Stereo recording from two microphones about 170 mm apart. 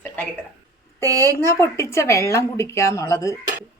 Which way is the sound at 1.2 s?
15° left (ahead or behind).